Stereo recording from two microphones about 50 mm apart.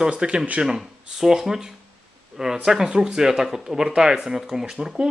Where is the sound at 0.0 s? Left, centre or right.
Centre.